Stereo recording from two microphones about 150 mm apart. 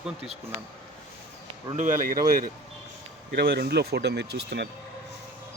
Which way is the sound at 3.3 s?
90° right.